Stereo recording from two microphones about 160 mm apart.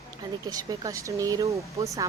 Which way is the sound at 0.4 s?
25° right (ahead or behind).